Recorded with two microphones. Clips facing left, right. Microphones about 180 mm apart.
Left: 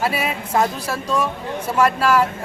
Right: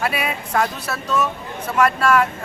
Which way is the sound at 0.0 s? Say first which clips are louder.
Left 1 dB; 30° left (ahead or behind).